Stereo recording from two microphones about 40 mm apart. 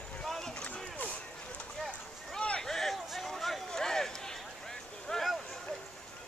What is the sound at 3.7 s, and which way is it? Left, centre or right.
Run, centre.